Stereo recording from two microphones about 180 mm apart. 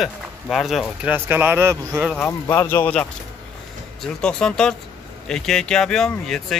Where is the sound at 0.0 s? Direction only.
Centre (ahead or behind); by 2.0 s 15° right (ahead or behind).